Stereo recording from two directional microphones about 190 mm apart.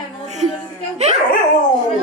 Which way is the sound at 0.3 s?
40° right (ahead or behind).